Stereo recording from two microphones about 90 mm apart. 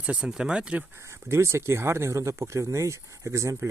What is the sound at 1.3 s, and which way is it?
Speech, 30° right (ahead or behind).